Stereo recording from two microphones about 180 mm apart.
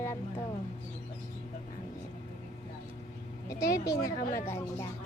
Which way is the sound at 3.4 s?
20° left (ahead or behind).